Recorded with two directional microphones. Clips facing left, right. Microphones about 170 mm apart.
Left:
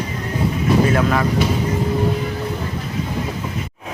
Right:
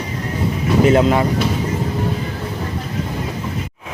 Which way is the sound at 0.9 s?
25° right (ahead or behind).